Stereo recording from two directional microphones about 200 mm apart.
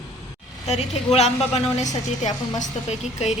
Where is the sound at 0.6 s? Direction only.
35° left (ahead or behind).